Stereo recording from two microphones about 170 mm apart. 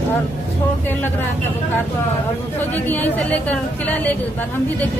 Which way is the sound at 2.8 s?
10° left (ahead or behind).